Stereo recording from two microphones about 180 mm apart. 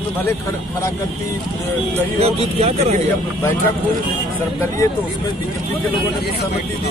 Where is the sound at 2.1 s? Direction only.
35° right (ahead or behind).